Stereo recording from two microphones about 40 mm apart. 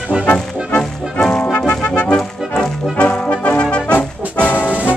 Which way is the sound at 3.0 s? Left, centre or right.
Left.